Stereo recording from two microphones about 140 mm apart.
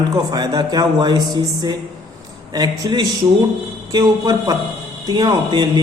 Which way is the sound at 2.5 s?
30° right (ahead or behind).